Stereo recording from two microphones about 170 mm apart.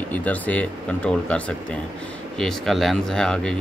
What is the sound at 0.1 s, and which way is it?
Speech, 10° left (ahead or behind).